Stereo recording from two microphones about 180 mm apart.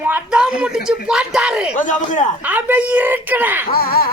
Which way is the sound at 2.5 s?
10° right (ahead or behind).